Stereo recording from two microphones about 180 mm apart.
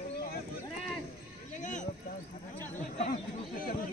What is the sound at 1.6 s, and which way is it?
Speech, 45° left (ahead or behind).